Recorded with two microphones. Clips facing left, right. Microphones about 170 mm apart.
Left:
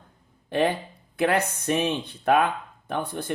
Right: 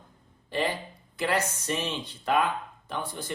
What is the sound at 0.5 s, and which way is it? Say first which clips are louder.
Speech: left 6 dB; 55° left (ahead or behind).